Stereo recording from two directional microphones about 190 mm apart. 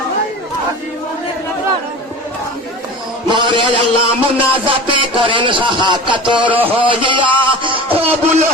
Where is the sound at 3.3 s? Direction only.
25° right (ahead or behind).